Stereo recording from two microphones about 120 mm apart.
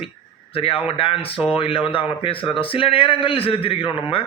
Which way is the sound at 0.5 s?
50° left (ahead or behind).